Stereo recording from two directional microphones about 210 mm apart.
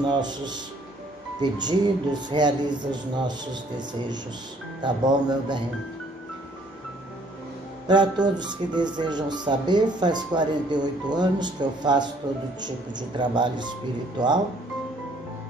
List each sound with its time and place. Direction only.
0.1 s speech: 20° right (ahead or behind)
7.8 s speech: 20° right (ahead or behind)
13.2 s speech: 20° right (ahead or behind)